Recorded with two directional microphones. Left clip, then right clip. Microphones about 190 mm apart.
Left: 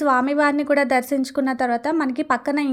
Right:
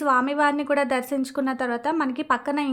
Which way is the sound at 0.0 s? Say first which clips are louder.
Left 2 dB; 20° left (ahead or behind).